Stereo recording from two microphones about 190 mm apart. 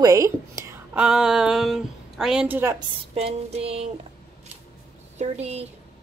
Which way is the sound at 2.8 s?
30° right (ahead or behind).